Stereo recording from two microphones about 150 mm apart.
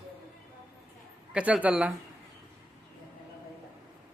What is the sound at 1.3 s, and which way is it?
Speech, 10° right (ahead or behind).